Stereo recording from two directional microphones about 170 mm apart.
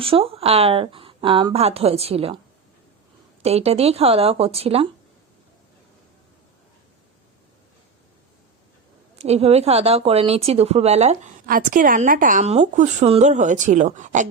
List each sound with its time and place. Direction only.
0.0 s speech: 35° right (ahead or behind)
3.4 s speech: 40° right (ahead or behind)
9.1 s speech: 35° right (ahead or behind)
11.4 s speech: 55° right (ahead or behind)